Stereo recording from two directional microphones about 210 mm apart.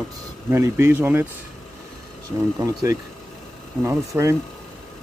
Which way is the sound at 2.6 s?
15° right (ahead or behind).